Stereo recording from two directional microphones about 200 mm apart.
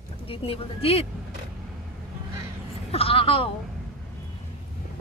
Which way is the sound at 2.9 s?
30° left (ahead or behind).